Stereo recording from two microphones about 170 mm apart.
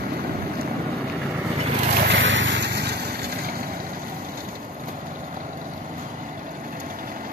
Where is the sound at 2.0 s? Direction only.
85° right.